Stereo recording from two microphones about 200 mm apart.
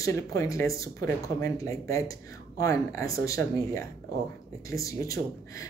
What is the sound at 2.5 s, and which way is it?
Speech, 15° left (ahead or behind).